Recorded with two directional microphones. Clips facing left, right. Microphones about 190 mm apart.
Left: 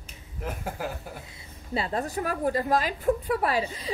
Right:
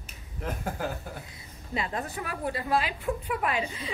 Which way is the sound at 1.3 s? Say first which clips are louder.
Left 4 dB; 30° left (ahead or behind).